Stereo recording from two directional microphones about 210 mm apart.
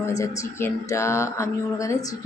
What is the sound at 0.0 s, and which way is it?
Speech, 15° left (ahead or behind).